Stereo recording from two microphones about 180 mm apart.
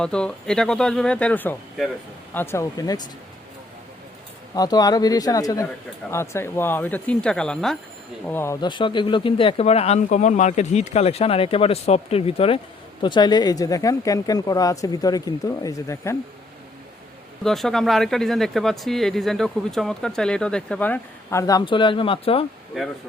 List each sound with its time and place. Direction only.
0.0 s speech: 5° left (ahead or behind); by 3.0 s 20° left (ahead or behind)
4.5 s speech: 20° left (ahead or behind)
8.6 s speech: 25° left (ahead or behind)
17.4 s speech: centre (ahead or behind); by 22.4 s 30° left (ahead or behind)
22.7 s speech: centre (ahead or behind)